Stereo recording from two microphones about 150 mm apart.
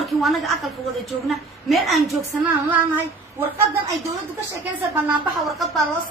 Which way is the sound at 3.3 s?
20° right (ahead or behind).